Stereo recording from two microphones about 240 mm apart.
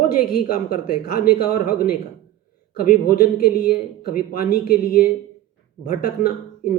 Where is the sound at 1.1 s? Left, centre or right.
Left.